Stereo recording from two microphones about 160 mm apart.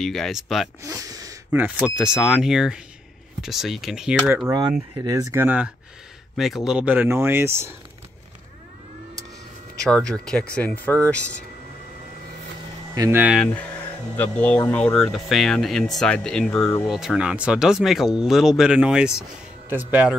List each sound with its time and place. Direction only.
0.0 s speech: centre (ahead or behind)
0.8 s speech: 20° right (ahead or behind)
1.8 s speech: 5° right (ahead or behind)
4.3 s speech: 15° right (ahead or behind)
9.8 s speech: 5° left (ahead or behind)
12.9 s speech: 20° right (ahead or behind)
13.2 s speech: 5° right (ahead or behind)
13.5 s speech: 10° left (ahead or behind); by 20.2 s 10° right (ahead or behind)